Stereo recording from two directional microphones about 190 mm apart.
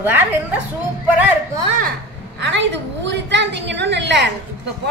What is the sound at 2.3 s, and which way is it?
A woman's voice, 70° right (ahead or behind).